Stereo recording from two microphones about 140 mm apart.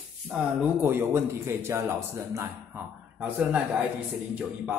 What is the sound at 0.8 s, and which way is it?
A man's voice, 15° right (ahead or behind).